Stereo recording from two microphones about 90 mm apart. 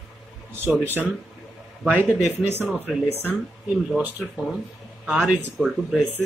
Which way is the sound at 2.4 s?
25° right (ahead or behind).